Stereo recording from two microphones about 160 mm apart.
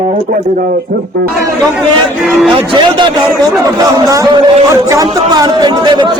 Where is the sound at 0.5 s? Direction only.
60° right (ahead or behind).